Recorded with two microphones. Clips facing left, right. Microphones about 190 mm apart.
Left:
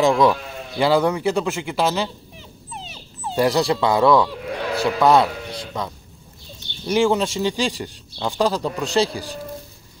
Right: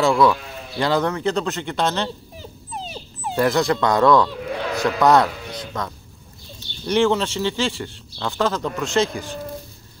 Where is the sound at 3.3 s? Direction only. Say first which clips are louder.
Even; 15° left (ahead or behind).